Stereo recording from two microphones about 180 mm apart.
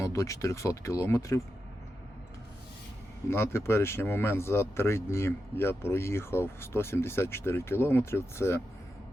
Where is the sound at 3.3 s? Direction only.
15° left (ahead or behind).